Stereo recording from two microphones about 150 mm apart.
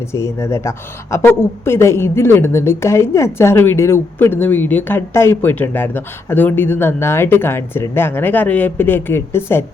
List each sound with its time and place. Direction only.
0.1 s a woman's voice: 20° left (ahead or behind)